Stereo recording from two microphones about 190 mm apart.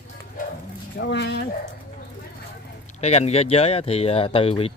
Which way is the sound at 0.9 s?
65° left (ahead or behind).